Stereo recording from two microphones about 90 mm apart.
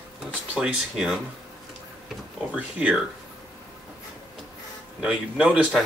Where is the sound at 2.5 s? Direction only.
15° right (ahead or behind).